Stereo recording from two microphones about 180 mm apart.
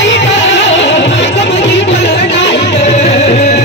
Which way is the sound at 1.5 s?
35° left (ahead or behind).